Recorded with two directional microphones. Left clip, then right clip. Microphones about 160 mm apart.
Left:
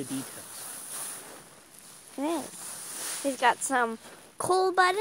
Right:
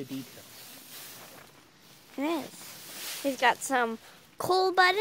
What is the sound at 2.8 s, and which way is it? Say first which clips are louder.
Snake: left 1 dB; 45° left (ahead or behind).